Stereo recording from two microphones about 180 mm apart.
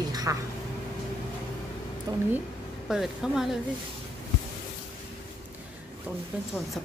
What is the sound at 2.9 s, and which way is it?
Speech, centre (ahead or behind).